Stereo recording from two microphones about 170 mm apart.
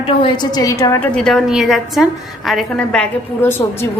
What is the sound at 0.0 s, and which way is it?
A woman's voice, 25° left (ahead or behind).